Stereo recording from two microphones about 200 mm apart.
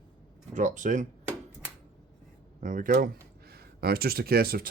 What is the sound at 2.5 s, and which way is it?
Speech, 40° right (ahead or behind).